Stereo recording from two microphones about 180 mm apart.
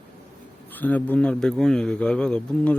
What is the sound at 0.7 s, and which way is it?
Speech, 10° left (ahead or behind).